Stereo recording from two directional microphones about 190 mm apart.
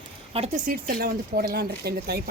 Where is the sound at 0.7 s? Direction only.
50° right (ahead or behind).